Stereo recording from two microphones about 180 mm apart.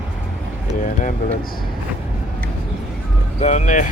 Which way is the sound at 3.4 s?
40° left (ahead or behind).